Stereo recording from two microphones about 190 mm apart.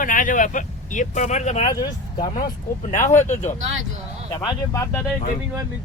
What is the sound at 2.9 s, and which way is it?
Speech, 40° left (ahead or behind).